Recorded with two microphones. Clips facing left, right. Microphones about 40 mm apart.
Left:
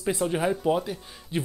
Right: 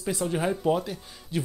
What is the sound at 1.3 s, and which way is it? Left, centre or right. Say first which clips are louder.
Speech: left 1 dB; left.